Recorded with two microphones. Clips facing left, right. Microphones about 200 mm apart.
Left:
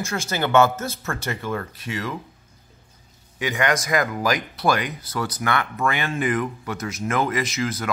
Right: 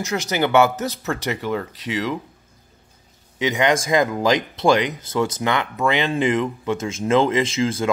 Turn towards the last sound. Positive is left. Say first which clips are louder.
# right 5 dB
turn(degrees=-25)  # may be behind; listen again after turning